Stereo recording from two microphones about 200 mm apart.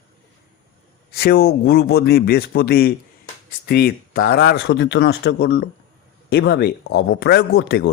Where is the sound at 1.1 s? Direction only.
50° left (ahead or behind).